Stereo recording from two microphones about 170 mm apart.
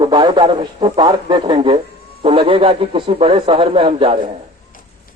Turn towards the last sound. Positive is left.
turn(degrees=-30)  # may be behind; listen again after turning